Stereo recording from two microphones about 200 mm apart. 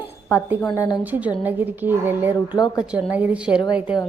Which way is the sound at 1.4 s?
10° right (ahead or behind).